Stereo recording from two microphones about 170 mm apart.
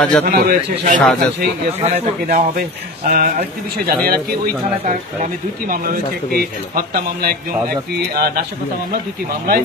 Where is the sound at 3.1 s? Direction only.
60° right (ahead or behind).